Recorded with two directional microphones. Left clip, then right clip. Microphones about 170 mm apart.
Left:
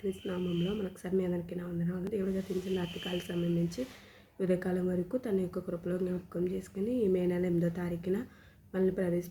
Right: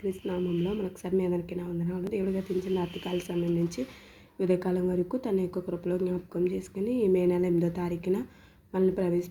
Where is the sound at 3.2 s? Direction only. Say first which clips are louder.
Right 6 dB; 20° right (ahead or behind).